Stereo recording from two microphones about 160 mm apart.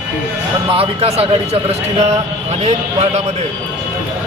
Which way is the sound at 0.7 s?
40° right (ahead or behind).